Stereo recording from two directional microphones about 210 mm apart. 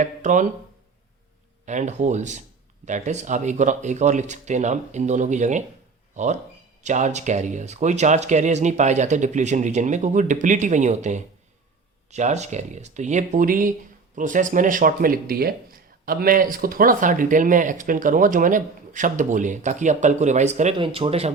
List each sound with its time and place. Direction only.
0.0 s speech: 35° right (ahead or behind)
1.6 s speech: 35° right (ahead or behind)
6.8 s speech: 35° right (ahead or behind)